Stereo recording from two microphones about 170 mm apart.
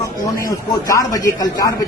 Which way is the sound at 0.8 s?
20° left (ahead or behind).